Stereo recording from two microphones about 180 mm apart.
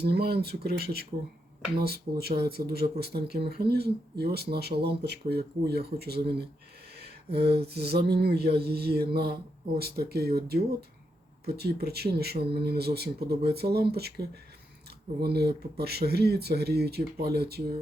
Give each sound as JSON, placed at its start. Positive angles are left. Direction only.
{"t": 0.0, "sound": "speech", "side_deg": -60}